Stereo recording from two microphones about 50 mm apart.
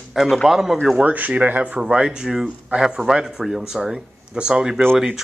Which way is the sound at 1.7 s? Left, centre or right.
Centre.